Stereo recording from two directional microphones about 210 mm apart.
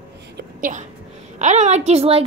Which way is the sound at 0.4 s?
40° right (ahead or behind).